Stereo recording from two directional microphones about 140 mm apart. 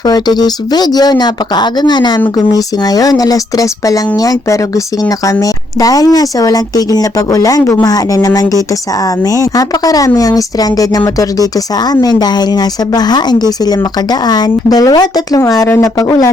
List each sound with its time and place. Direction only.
0.0 s speech: 30° left (ahead or behind)